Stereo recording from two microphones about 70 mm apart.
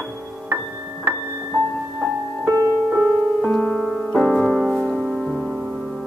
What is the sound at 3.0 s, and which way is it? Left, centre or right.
Music, centre.